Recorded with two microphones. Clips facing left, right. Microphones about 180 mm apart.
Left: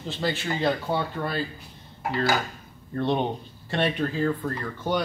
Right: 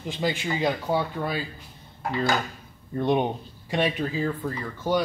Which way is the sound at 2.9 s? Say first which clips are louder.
Right 2 dB; 15° right (ahead or behind).